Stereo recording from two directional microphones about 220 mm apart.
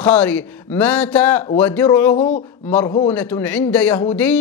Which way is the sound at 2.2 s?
30° left (ahead or behind).